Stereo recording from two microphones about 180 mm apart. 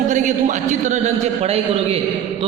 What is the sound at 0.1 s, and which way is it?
A man's voice, 45° right (ahead or behind).